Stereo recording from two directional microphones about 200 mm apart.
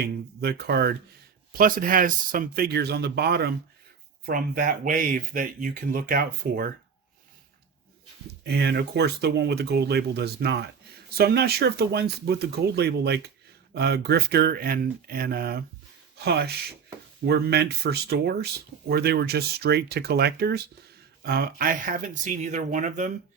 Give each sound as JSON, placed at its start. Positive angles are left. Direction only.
{"t": 0.0, "sound": "speech", "side_deg": -55}
{"t": 8.4, "sound": "speech", "side_deg": -55}